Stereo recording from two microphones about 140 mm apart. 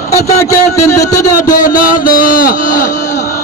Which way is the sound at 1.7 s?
75° left (ahead or behind).